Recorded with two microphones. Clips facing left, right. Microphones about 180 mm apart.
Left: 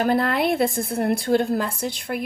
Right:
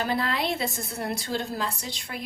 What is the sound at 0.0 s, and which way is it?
A woman's voice, 55° left (ahead or behind).